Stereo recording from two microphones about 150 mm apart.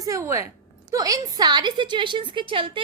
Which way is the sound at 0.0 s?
20° right (ahead or behind).